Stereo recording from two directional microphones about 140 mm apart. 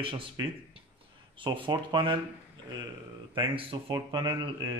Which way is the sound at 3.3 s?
40° right (ahead or behind).